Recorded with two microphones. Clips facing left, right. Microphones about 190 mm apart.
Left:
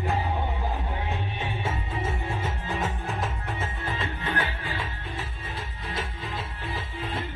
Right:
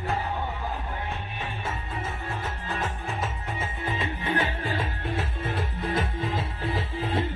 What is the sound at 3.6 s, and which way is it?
Music, 20° right (ahead or behind).